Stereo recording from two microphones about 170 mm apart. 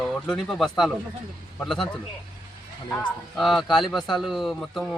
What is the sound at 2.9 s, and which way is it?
Speech, 5° left (ahead or behind).